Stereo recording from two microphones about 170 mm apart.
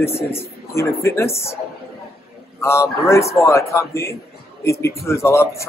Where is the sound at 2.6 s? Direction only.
15° left (ahead or behind).